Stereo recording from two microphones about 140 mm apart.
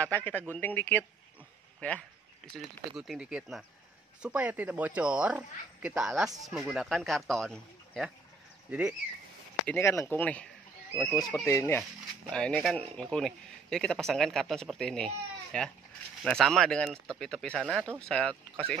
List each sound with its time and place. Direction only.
0.0 s speech: 15° left (ahead or behind)
2.5 s speech: 5° right (ahead or behind)
8.6 s speech: 10° right (ahead or behind)
9.7 s speech: 20° left (ahead or behind)
12.3 s speech: 5° left (ahead or behind)